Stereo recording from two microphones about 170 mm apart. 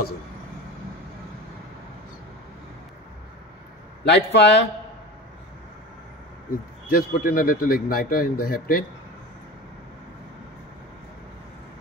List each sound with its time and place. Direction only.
4.0 s speech: 85° left
6.9 s speech: 60° left (ahead or behind)